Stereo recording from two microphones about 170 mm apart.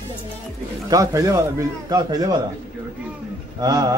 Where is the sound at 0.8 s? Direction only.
20° right (ahead or behind).